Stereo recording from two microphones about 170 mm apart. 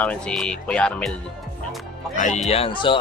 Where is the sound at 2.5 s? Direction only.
30° left (ahead or behind).